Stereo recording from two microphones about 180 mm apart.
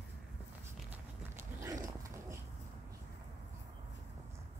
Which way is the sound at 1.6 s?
15° right (ahead or behind).